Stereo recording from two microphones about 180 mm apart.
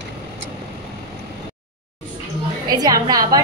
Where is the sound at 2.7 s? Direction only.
20° right (ahead or behind).